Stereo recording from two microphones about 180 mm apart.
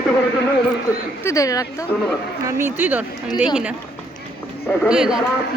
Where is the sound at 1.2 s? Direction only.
15° left (ahead or behind).